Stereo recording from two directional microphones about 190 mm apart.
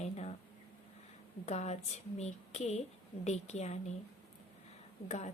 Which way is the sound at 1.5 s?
35° left (ahead or behind).